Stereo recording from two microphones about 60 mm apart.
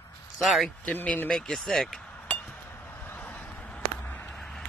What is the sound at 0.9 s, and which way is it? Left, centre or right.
Speech, left.